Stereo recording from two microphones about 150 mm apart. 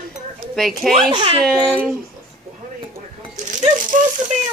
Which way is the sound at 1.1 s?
40° right (ahead or behind).